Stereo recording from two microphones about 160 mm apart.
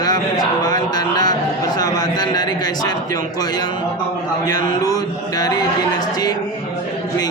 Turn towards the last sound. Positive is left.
turn(degrees=25)  # may be behind; listen again after turning